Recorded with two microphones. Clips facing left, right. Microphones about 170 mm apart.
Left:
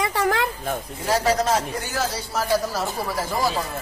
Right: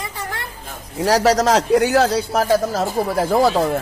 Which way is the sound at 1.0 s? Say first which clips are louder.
Right 7 dB; 80° right.